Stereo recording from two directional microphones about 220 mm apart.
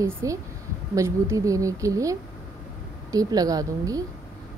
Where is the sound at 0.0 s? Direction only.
15° right (ahead or behind).